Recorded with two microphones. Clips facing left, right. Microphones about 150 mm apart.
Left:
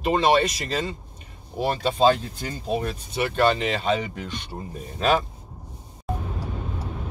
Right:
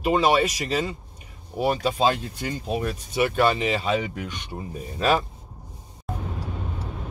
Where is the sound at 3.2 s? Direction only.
5° right (ahead or behind).